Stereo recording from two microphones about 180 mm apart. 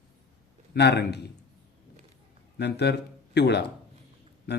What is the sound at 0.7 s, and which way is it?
Speech, 65° left (ahead or behind).